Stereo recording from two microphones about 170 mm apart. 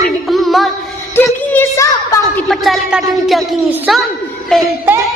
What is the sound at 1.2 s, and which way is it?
A woman's voice, 15° left (ahead or behind).